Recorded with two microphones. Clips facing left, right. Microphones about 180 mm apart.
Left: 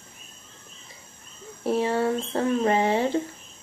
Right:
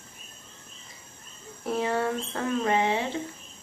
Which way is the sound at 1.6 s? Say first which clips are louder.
Left 4 dB; 30° left (ahead or behind).